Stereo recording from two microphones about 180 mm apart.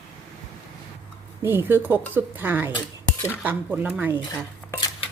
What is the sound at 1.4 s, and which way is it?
A woman's voice, 10° right (ahead or behind).